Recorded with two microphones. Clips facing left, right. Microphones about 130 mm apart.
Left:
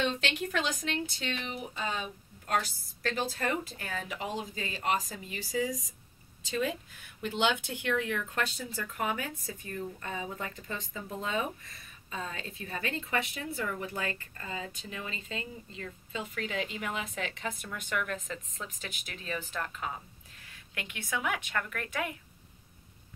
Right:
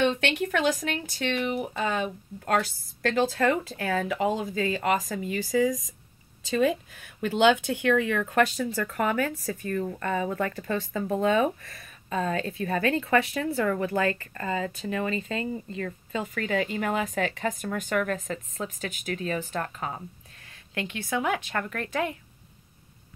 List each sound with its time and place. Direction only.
0.0 s speech: 60° right (ahead or behind)
3.9 s speech: 55° right (ahead or behind)
7.8 s speech: 90° right
9.0 s speech: 65° right (ahead or behind); by 17.0 s 50° right (ahead or behind)
17.0 s speech: 60° right (ahead or behind); by 20.0 s 45° right (ahead or behind)
20.7 s speech: 30° right (ahead or behind)